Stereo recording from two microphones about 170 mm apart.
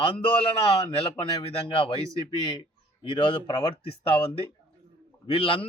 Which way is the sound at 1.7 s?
35° left (ahead or behind).